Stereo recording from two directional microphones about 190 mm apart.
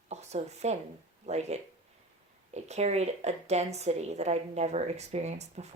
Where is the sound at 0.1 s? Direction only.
35° right (ahead or behind).